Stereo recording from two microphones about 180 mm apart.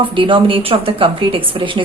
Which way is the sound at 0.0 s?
25° right (ahead or behind).